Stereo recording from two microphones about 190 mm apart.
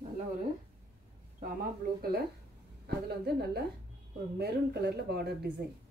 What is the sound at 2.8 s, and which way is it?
Speech, 55° right (ahead or behind).